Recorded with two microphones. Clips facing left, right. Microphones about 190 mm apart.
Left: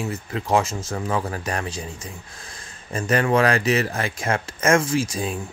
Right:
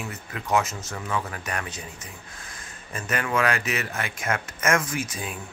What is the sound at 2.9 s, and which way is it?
Speech, 35° left (ahead or behind).